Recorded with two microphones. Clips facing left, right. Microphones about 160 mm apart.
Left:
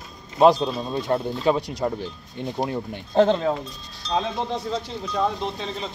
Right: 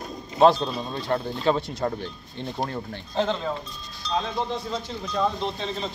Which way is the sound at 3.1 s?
50° left (ahead or behind).